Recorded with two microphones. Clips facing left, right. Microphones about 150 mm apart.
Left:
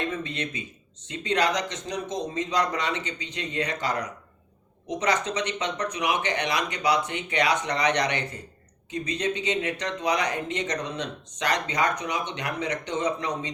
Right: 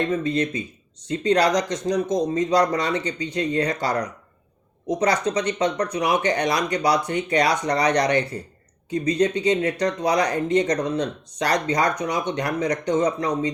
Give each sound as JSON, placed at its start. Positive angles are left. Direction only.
{"t": 0.1, "sound": "speech", "side_deg": -35}